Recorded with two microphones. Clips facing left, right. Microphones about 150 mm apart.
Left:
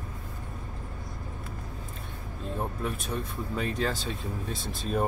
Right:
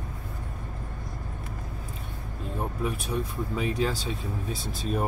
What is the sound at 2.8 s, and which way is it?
Speech, centre (ahead or behind).